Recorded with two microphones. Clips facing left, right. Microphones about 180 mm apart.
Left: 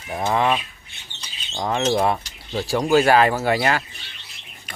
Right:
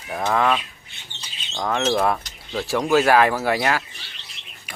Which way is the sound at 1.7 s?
10° left (ahead or behind).